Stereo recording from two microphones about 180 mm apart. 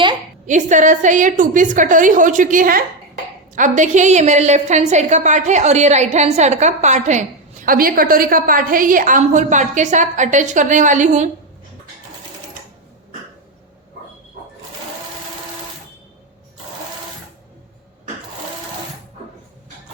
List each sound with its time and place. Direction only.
0.4 s a woman's voice: 45° right (ahead or behind)